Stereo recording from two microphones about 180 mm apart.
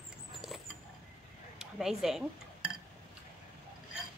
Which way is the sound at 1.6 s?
Centre (ahead or behind).